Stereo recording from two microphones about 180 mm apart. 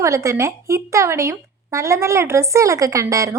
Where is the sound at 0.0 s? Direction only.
15° right (ahead or behind).